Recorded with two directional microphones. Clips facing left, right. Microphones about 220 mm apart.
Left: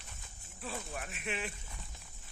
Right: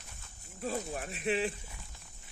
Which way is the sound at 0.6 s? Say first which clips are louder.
Right 6 dB; 40° right (ahead or behind).